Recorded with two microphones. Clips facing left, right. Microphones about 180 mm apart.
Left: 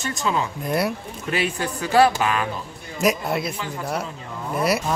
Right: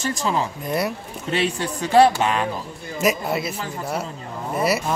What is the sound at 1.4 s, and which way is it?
Speech, 30° right (ahead or behind).